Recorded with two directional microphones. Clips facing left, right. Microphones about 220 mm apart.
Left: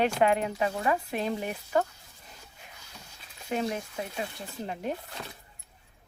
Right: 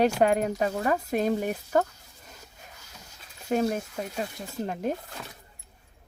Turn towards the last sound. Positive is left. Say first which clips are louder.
# right 5 dB
turn(degrees=-45)  # may be behind; listen again after turning